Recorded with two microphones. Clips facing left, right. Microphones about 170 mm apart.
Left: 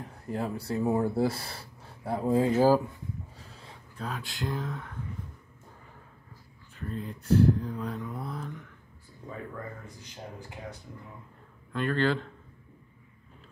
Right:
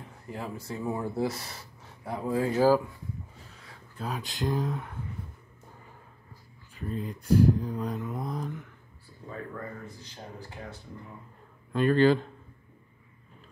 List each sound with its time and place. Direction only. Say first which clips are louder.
0.3 s speech: left 5 dB; 35° left (ahead or behind); by 2.8 s 20° left (ahead or behind)
3.9 s speech: right 2 dB; 10° right (ahead or behind)
4.2 s speech: right 6 dB; 20° right (ahead or behind)
4.7 s a sound: right 2 dB; 10° right (ahead or behind)
6.7 s speech: right 2 dB; 10° right (ahead or behind)
8.0 s mantra: right 3 dB; 10° right (ahead or behind)
11.7 s speech: right 6 dB; 15° right (ahead or behind)